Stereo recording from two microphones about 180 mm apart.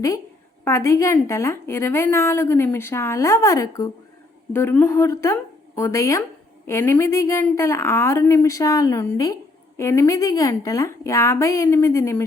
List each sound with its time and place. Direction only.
0.6 s a woman's voice: 15° left (ahead or behind)